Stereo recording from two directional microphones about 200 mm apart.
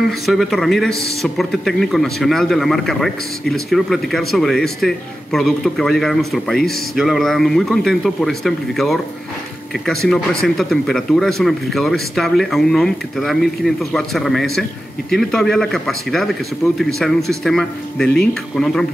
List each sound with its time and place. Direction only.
0.3 s speech: centre (ahead or behind)